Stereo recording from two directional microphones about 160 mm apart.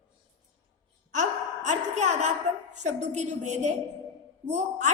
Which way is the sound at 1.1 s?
50° right (ahead or behind).